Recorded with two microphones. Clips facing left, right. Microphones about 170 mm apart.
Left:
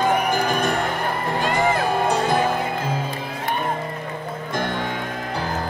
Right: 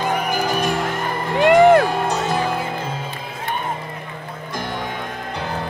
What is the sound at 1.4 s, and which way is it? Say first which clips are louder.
Music: right 11 dB; 65° right (ahead or behind).